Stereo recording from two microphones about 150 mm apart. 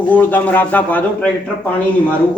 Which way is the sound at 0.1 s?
10° left (ahead or behind).